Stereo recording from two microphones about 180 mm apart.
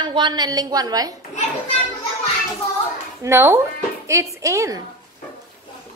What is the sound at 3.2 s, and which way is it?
A woman's voice, 15° right (ahead or behind).